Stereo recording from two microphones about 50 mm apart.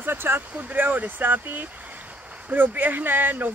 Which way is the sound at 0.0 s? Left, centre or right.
Right.